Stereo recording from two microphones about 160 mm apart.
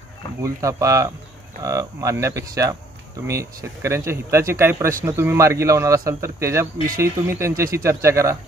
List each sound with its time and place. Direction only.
0.4 s cattle: 20° right (ahead or behind)
3.3 s speech: 20° right (ahead or behind)